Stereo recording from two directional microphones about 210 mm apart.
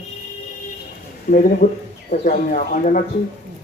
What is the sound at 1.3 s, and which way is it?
A man's voice, 40° left (ahead or behind).